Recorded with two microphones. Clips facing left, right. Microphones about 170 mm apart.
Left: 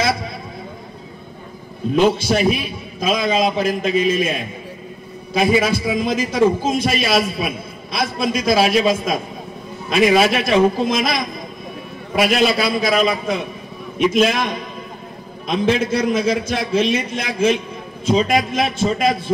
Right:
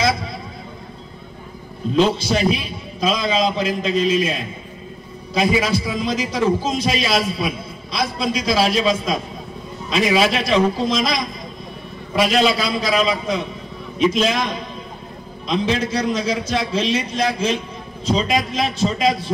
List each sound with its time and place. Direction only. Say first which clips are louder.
2.0 s a man's voice: left 2 dB; 55° left (ahead or behind)